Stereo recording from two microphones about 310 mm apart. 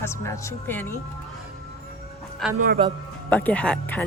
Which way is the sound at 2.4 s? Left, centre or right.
Centre.